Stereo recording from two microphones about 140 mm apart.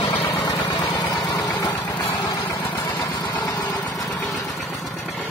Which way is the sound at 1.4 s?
20° left (ahead or behind).